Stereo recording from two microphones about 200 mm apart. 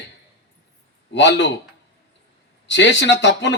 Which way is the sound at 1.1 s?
60° left (ahead or behind).